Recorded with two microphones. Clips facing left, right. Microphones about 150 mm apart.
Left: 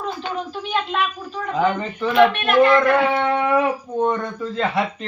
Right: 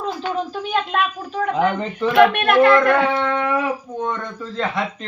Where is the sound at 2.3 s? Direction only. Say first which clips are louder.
Right 1 dB; 60° right (ahead or behind).